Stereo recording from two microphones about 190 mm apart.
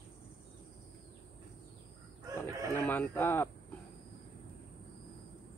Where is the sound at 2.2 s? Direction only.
15° right (ahead or behind).